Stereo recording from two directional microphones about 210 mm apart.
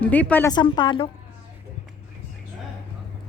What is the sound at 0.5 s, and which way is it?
Speech, 20° left (ahead or behind).